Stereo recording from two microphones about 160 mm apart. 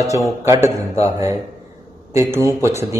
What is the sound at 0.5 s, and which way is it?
A man's voice, 15° right (ahead or behind).